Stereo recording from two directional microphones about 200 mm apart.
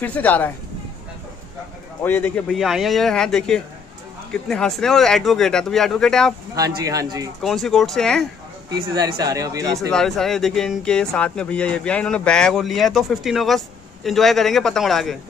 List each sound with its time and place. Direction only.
0.0 s speech: 5° left (ahead or behind)
2.0 s speech: 10° left (ahead or behind)
6.5 s speech: 20° right (ahead or behind)
7.4 s speech: centre (ahead or behind)
8.6 s speech: 20° right (ahead or behind)
9.8 s speech: 5° left (ahead or behind)